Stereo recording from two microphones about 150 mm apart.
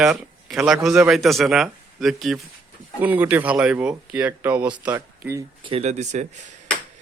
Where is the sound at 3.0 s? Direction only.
10° right (ahead or behind).